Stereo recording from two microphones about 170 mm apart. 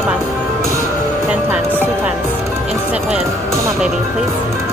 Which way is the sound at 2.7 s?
40° right (ahead or behind).